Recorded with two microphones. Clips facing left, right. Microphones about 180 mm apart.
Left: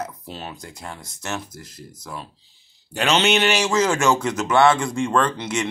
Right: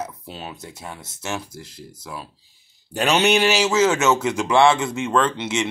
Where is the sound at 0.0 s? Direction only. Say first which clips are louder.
Even; 5° right (ahead or behind).